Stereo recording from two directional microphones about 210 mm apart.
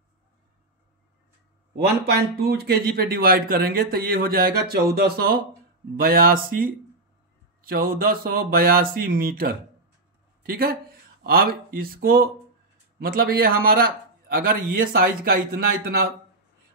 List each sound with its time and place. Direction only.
1.8 s a man's voice: 50° right (ahead or behind)